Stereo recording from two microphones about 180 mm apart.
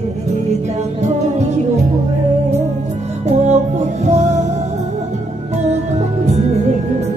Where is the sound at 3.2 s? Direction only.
40° right (ahead or behind).